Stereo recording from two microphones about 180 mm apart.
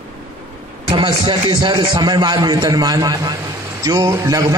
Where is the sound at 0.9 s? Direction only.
25° right (ahead or behind).